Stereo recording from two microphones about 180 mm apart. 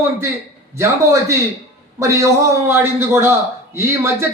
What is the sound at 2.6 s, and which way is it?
A man's voice, 15° right (ahead or behind).